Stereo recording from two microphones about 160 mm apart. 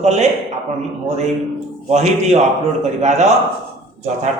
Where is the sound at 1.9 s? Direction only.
45° right (ahead or behind).